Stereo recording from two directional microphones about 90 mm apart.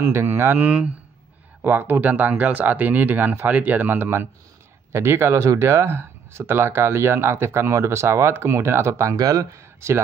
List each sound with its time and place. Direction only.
0.0 s speech: 30° right (ahead or behind)
0.7 s speech: 10° right (ahead or behind)
1.6 s speech: 20° right (ahead or behind)